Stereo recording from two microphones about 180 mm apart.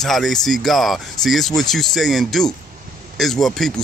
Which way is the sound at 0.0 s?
Centre (ahead or behind).